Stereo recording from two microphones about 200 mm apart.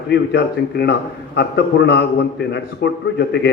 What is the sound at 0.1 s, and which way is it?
A man's voice, 60° left (ahead or behind).